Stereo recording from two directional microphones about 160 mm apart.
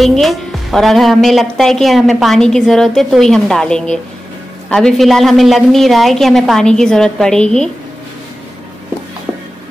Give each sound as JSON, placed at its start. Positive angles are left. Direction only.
{"t": 0.0, "sound": "a woman's voice", "side_deg": 0}